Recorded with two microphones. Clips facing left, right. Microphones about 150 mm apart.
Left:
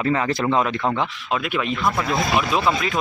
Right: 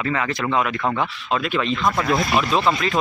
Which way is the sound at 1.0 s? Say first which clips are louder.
Right 1 dB; 10° left (ahead or behind).